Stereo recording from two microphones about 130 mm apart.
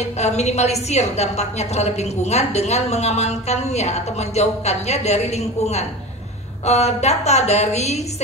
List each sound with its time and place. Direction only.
0.0 s a woman's voice: 60° left (ahead or behind)